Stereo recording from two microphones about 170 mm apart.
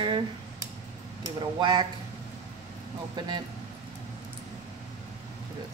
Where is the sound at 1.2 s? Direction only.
25° right (ahead or behind).